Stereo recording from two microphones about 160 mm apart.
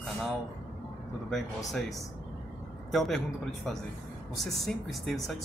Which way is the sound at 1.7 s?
Centre (ahead or behind).